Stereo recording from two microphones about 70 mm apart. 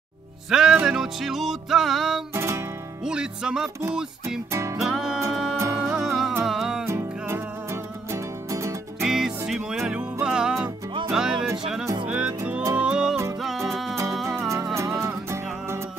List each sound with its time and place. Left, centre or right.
0.5 s music: centre
2.3 s guitar: right
3.0 s music: centre
4.5 s music: right
4.7 s music: centre
6.9 s music: right
9.0 s music: centre
12.1 s music: centre
13.7 s music: centre
14.5 s music: right